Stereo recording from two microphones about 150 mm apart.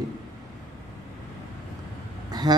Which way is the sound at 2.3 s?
25° right (ahead or behind).